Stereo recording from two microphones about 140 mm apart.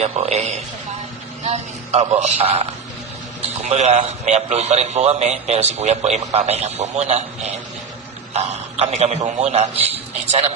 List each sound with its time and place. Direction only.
0.0 s a man's voice: 50° right (ahead or behind)
1.5 s a man's voice: 50° right (ahead or behind)